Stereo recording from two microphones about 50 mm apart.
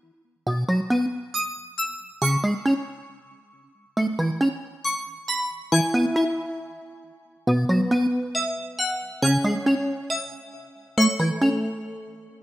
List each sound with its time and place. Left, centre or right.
0.4 s music: centre
3.9 s music: centre
7.4 s music: centre
9.8 s music: centre
11.0 s music: centre